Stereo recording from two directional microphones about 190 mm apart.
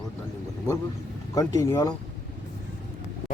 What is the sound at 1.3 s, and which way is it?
Speech, 20° left (ahead or behind).